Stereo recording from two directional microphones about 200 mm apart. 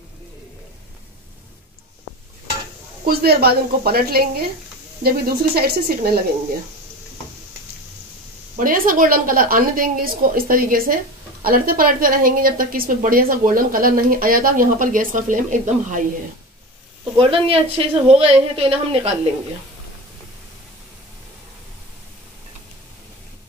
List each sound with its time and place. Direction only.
3.1 s a woman's voice: 50° right (ahead or behind)
8.5 s a woman's voice: 45° right (ahead or behind)
17.2 s speech: 30° right (ahead or behind)